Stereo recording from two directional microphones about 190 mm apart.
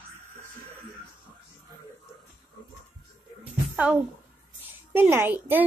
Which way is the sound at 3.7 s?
10° right (ahead or behind).